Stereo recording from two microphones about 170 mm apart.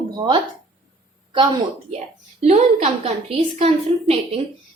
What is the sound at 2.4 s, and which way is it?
A woman's voice, 40° right (ahead or behind).